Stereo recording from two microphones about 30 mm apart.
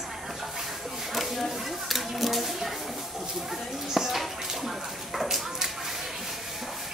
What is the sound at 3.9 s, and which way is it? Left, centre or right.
Music, centre.